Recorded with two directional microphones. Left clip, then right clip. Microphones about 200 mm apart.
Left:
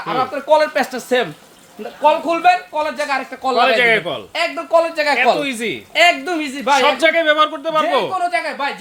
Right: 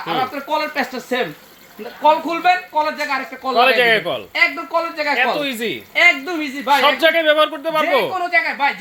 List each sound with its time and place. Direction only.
0.1 s speech: 45° left (ahead or behind)
3.6 s speech: 10° left (ahead or behind)
4.4 s speech: 50° left (ahead or behind)
5.4 s speech: 10° left (ahead or behind)
5.9 s speech: 50° left (ahead or behind)
6.7 s speech: 10° left (ahead or behind)
8.3 s speech: 20° left (ahead or behind)